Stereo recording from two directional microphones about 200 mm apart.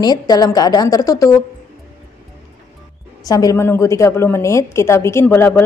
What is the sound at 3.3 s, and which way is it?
A woman's voice, 15° left (ahead or behind).